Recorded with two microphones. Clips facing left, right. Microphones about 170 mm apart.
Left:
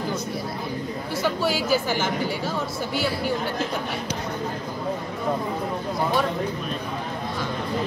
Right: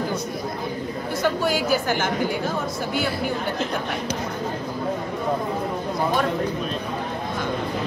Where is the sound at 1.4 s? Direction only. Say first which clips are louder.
Right 1 dB; 50° right (ahead or behind).